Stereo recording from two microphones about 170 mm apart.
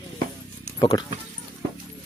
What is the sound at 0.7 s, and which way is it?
Speech, 20° left (ahead or behind).